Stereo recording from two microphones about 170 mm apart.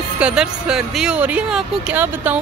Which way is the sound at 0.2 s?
5° right (ahead or behind).